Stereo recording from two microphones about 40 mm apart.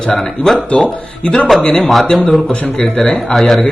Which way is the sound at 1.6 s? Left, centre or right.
Centre.